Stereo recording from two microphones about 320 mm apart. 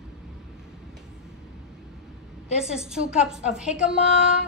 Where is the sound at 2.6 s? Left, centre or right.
Centre.